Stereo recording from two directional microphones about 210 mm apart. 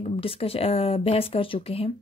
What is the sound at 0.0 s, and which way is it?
A woman's voice, 25° left (ahead or behind).